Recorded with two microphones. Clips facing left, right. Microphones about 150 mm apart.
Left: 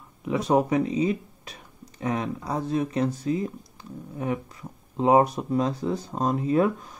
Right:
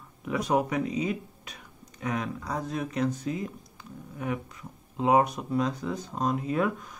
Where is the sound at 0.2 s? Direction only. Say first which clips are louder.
Left 4 dB; 25° left (ahead or behind).